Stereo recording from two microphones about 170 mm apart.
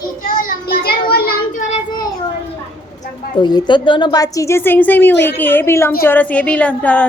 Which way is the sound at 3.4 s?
25° left (ahead or behind).